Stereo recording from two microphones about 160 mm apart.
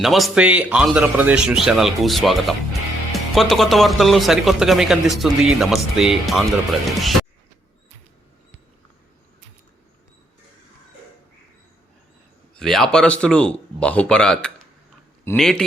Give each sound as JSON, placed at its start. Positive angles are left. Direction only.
{"t": 0.0, "sound": "speech", "side_deg": 0}
{"t": 12.5, "sound": "speech", "side_deg": 5}